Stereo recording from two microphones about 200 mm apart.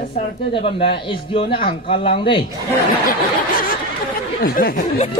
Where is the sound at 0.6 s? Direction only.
25° left (ahead or behind).